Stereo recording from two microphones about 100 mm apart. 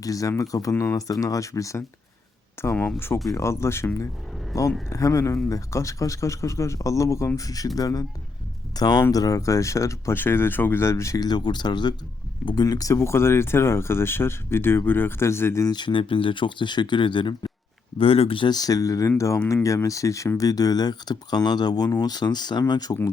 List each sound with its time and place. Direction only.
0.0 s speech: 35° left (ahead or behind)
11.3 s speech: 45° left (ahead or behind); by 15.6 s 25° left (ahead or behind)
15.6 s speech: 45° left (ahead or behind)
17.9 s speech: 70° left (ahead or behind)
18.5 s speech: 40° left (ahead or behind)